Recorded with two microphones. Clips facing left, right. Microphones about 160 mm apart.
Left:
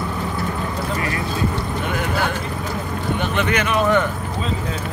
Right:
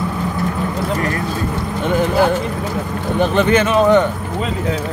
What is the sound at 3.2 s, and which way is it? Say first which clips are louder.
Speech: right 9 dB; 30° right (ahead or behind).